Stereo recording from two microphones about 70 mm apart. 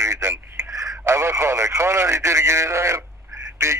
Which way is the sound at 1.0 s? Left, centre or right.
Right.